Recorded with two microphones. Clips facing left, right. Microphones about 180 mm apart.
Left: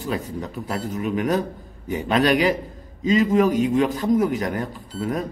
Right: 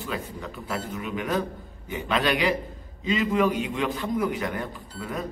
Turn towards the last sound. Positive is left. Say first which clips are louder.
# left 7 dB
turn(degrees=40)  # may be behind; listen again after turning